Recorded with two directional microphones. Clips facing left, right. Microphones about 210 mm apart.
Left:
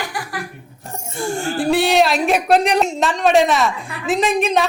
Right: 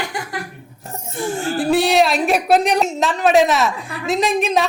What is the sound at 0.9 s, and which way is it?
A woman's voice, centre (ahead or behind).